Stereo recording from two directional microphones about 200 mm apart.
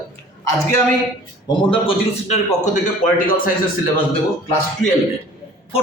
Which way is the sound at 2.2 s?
35° left (ahead or behind).